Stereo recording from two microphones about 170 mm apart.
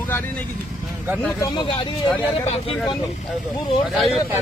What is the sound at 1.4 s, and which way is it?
Speech, 25° left (ahead or behind).